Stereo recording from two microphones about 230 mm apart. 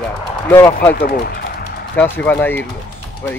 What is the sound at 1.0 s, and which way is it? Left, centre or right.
Speech, left.